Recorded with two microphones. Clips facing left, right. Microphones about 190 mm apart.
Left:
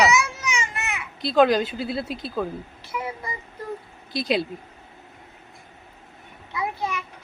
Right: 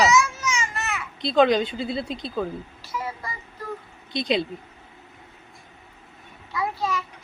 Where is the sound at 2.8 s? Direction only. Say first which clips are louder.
Left 2 dB; 20° left (ahead or behind).